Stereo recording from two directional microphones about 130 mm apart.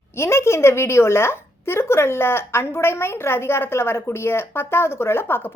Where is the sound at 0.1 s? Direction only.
20° left (ahead or behind).